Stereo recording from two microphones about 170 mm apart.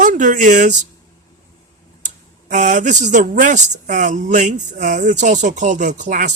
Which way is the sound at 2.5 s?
50° right (ahead or behind).